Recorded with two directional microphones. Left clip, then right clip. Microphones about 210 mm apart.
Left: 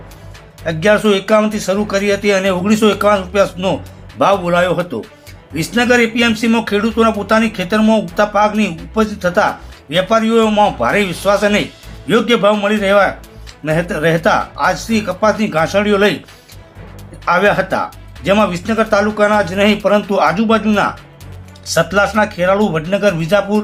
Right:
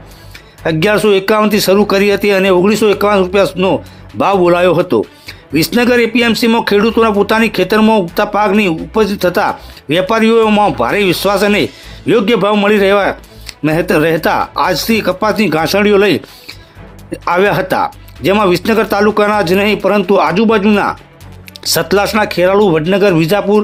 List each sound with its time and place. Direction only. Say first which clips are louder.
0.6 s speech: right 2 dB; 50° right (ahead or behind)
17.2 s speech: right 1 dB; 50° right (ahead or behind)